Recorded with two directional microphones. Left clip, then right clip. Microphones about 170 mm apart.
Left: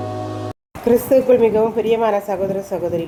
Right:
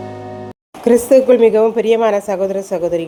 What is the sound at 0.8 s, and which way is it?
A woman's voice, 45° right (ahead or behind).